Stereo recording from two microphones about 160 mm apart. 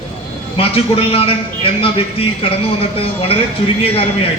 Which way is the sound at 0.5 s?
35° left (ahead or behind).